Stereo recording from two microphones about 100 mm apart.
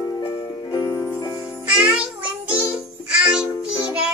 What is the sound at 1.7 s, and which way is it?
Music, 10° right (ahead or behind).